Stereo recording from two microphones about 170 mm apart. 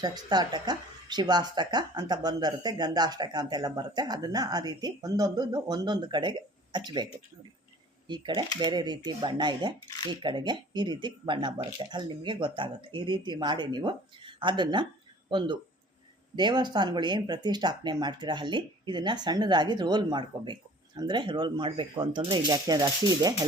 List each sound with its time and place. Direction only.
0.0 s speech: 25° right (ahead or behind)